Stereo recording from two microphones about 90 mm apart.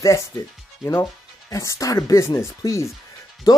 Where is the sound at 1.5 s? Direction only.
35° left (ahead or behind).